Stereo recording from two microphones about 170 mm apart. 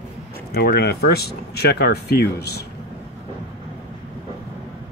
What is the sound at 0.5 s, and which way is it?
Speech, 70° left (ahead or behind).